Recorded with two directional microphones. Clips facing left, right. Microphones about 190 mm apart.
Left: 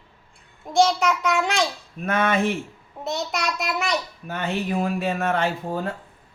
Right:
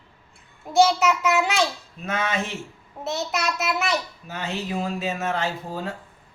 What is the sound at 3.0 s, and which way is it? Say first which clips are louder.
Child singing: even; 5° right (ahead or behind).